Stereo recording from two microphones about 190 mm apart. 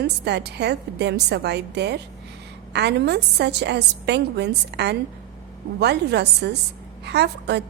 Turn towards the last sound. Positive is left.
turn(degrees=-60)  # may be behind; listen again after turning